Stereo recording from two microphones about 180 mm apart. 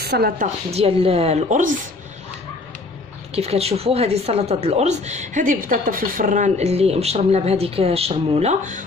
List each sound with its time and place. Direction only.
0.0 s speech: 60° right (ahead or behind)
0.7 s speech: 35° right (ahead or behind)
3.3 s speech: 35° right (ahead or behind)